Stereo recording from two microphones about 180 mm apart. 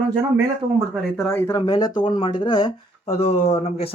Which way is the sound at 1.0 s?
Centre (ahead or behind).